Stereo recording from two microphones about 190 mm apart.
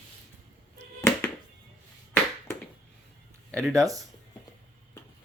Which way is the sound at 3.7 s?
20° right (ahead or behind).